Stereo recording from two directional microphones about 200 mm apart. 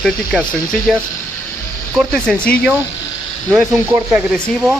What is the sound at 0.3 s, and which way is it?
Speech, 5° left (ahead or behind).